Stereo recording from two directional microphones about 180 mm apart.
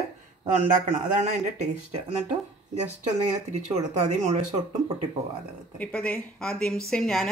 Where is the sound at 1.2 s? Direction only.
40° right (ahead or behind).